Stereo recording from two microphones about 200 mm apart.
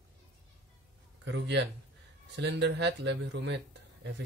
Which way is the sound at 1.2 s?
65° right (ahead or behind).